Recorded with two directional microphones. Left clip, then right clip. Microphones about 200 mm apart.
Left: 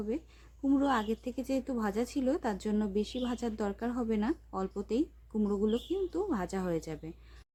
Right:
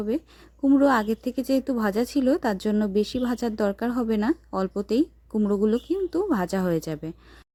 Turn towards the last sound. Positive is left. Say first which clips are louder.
# right 9 dB
turn(degrees=-35)  # may be behind; listen again after turning